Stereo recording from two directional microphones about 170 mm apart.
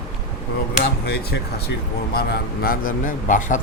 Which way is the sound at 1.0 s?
70° left (ahead or behind).